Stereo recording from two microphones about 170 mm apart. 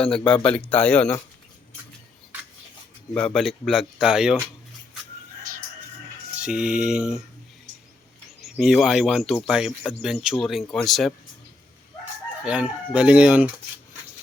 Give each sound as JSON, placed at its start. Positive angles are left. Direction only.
{"t": 0.0, "sound": "speech", "side_deg": 5}
{"t": 3.2, "sound": "speech", "side_deg": 5}
{"t": 6.4, "sound": "speech", "side_deg": -5}
{"t": 8.4, "sound": "speech", "side_deg": 0}
{"t": 12.5, "sound": "chicken", "side_deg": -5}